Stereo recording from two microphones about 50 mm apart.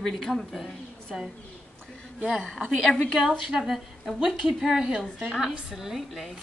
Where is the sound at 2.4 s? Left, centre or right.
Centre.